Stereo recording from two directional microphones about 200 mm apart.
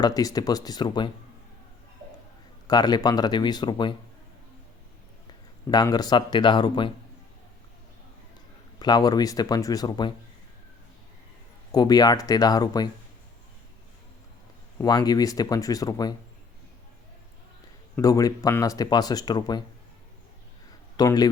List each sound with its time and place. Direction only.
0.0 s speech: 20° left (ahead or behind)
2.6 s speech: 20° left (ahead or behind)
5.7 s speech: 20° left (ahead or behind)
8.8 s speech: 20° left (ahead or behind)
11.7 s speech: 20° left (ahead or behind)
14.8 s speech: 20° left (ahead or behind)
17.9 s speech: 15° left (ahead or behind)
20.9 s speech: 20° left (ahead or behind)